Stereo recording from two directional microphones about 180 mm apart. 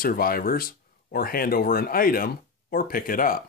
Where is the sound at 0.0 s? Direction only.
55° left (ahead or behind).